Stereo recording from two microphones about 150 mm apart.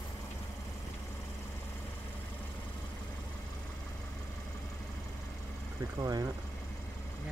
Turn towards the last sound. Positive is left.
turn(degrees=-25)  # may be behind; listen again after turning